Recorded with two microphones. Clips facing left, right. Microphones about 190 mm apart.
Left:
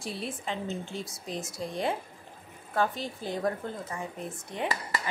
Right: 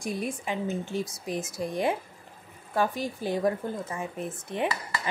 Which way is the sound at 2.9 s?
20° left (ahead or behind).